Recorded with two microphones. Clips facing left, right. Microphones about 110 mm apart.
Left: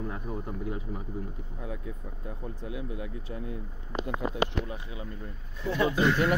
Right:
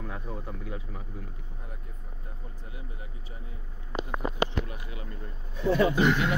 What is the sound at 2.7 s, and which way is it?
Speech, 85° left.